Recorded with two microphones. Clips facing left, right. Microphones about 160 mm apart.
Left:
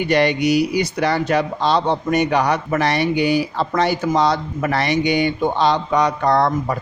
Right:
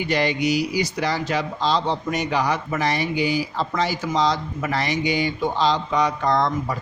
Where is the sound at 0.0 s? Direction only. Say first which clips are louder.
Left 5 dB; 60° left (ahead or behind).